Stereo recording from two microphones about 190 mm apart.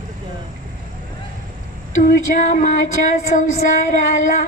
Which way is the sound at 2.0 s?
45° left (ahead or behind).